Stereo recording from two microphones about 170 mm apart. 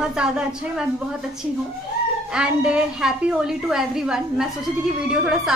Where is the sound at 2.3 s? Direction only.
5° right (ahead or behind).